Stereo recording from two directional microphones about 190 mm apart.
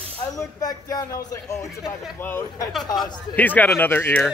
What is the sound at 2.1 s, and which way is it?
Speech, 10° left (ahead or behind).